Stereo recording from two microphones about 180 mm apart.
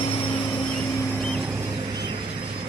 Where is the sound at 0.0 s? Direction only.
25° left (ahead or behind).